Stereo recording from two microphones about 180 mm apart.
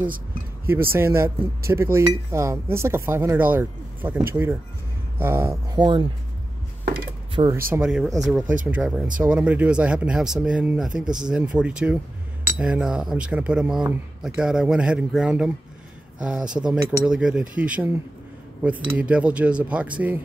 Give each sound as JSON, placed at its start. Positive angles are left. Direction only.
{"t": 0.9, "sound": "speech", "side_deg": -15}
{"t": 5.8, "sound": "speech", "side_deg": -25}
{"t": 7.4, "sound": "speech", "side_deg": -30}
{"t": 7.7, "sound": "speech", "side_deg": -5}